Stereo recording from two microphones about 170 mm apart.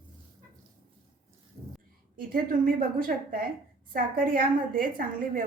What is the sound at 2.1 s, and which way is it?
A woman's voice, 60° right (ahead or behind).